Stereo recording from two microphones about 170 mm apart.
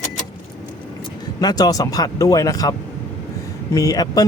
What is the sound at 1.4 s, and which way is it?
Speech, 20° left (ahead or behind).